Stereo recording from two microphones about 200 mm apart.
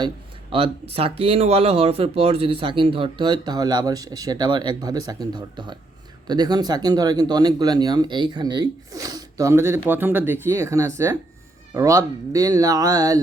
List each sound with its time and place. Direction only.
0.5 s speech: 30° right (ahead or behind)